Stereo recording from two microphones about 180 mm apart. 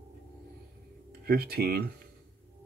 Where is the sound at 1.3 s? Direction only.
60° right (ahead or behind).